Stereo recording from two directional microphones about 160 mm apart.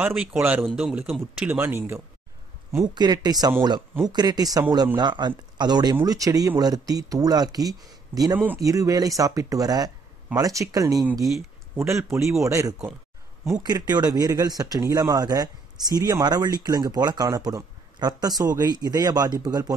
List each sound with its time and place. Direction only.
0.0 s speech: 10° right (ahead or behind)
2.7 s speech: 25° right (ahead or behind)
11.2 s speech: centre (ahead or behind)
12.0 s speech: 15° right (ahead or behind)